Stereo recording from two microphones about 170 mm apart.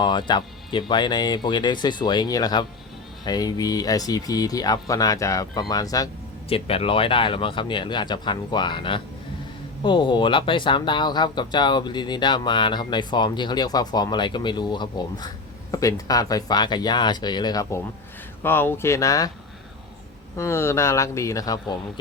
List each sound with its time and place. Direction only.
0.0 s speech: 25° left (ahead or behind)
6.5 s speech: 35° left (ahead or behind)
20.3 s speech: 15° left (ahead or behind)